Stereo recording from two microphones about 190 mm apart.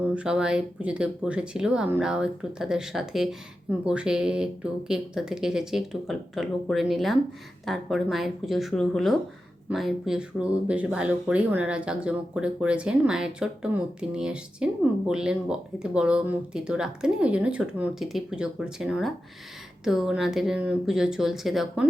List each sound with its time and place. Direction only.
0.0 s speech: 5° right (ahead or behind)